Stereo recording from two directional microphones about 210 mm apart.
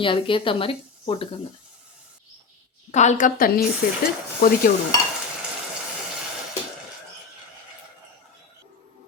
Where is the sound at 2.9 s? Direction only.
35° left (ahead or behind).